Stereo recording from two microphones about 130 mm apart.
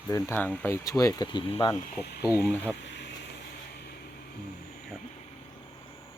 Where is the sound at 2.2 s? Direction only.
25° left (ahead or behind).